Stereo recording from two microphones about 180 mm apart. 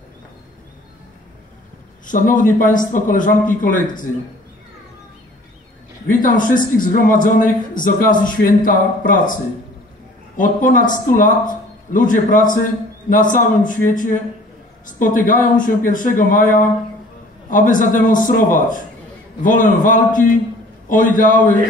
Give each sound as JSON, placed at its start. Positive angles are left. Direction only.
{"t": 2.0, "sound": "speech", "side_deg": 50}
{"t": 6.0, "sound": "speech", "side_deg": 50}
{"t": 10.3, "sound": "speech", "side_deg": 50}